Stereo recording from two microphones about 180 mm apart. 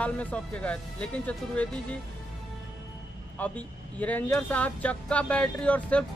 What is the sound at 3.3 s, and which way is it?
Speech, 10° left (ahead or behind).